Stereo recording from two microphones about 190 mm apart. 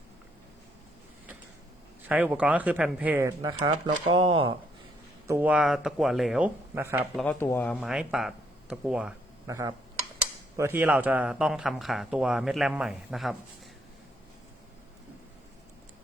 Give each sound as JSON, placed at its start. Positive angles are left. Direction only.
{"t": 2.0, "sound": "speech", "side_deg": -10}
{"t": 3.5, "sound": "speech", "side_deg": -30}
{"t": 5.3, "sound": "speech", "side_deg": -10}
{"t": 6.7, "sound": "speech", "side_deg": -10}
{"t": 7.2, "sound": "speech", "side_deg": 10}
{"t": 9.5, "sound": "speech", "side_deg": -15}